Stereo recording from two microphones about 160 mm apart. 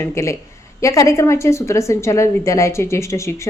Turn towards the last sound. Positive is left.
turn(degrees=20)  # may be behind; listen again after turning